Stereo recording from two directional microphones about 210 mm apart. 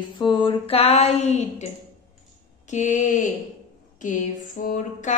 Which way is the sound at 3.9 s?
35° left (ahead or behind).